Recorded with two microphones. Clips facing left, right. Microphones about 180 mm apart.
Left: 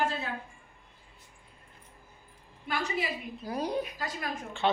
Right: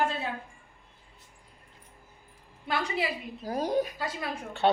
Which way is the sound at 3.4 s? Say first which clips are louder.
Right 4 dB; 40° right (ahead or behind).